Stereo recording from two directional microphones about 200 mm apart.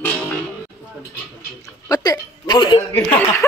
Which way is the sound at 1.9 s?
20° left (ahead or behind).